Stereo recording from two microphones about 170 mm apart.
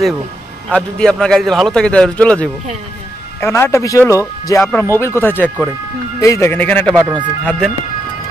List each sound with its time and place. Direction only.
0.7 s a man's voice: 5° left (ahead or behind)